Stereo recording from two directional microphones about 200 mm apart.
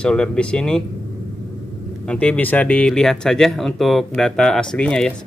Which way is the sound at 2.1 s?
5° left (ahead or behind).